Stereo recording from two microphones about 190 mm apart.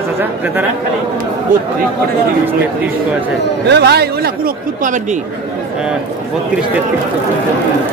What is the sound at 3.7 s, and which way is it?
Speech, 60° right (ahead or behind).